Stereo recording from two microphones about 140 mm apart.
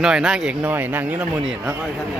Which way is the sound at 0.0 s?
5° right (ahead or behind).